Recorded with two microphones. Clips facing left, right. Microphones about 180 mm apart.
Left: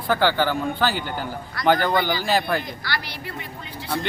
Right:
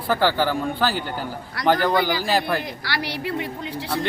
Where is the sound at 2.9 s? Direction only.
75° right (ahead or behind).